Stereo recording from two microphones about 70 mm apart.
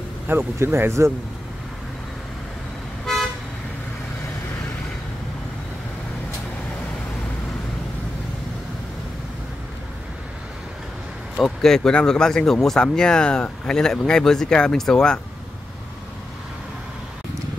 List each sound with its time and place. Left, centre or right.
0.3 s speech: right
3.1 s toot: centre
11.4 s speech: centre